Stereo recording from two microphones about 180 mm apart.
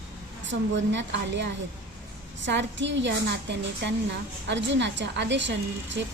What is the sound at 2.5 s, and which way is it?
A woman's voice, 75° right (ahead or behind).